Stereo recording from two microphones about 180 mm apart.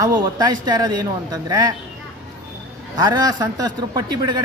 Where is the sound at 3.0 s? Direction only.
20° right (ahead or behind).